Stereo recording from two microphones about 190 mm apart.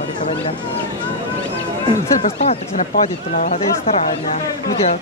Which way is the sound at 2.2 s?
35° left (ahead or behind).